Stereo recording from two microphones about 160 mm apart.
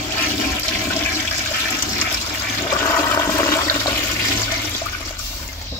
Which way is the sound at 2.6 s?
15° left (ahead or behind).